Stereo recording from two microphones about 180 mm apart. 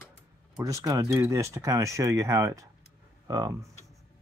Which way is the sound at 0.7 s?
20° right (ahead or behind).